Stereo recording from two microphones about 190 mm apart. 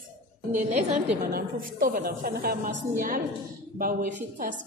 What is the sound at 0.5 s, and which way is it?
Speech, 40° right (ahead or behind).